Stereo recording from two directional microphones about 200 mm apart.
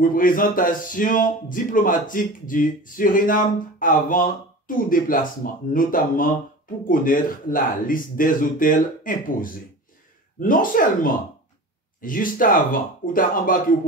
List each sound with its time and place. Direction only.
0.0 s speech: 45° left (ahead or behind)